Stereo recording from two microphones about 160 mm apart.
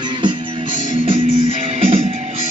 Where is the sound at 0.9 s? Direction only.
35° right (ahead or behind).